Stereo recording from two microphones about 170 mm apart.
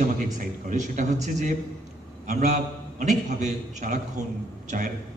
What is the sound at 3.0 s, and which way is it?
A man's voice, 45° right (ahead or behind).